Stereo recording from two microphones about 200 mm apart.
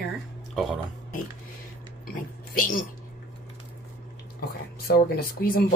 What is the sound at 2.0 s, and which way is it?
Speech, 45° left (ahead or behind).